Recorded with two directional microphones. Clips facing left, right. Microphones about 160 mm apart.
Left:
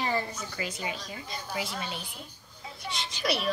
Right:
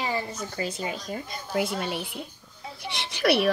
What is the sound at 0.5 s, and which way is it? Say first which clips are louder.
A child's voice: right 5 dB; 35° right (ahead or behind).